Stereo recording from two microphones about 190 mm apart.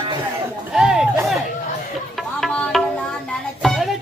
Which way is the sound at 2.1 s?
Centre (ahead or behind).